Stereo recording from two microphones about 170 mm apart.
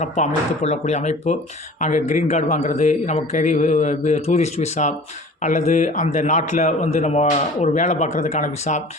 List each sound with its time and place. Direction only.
0.0 s a man's voice: 40° left (ahead or behind)